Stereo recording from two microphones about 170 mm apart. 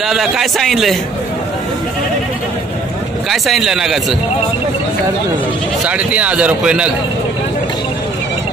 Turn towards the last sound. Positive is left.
turn(degrees=-5)  # may be behind; listen again after turning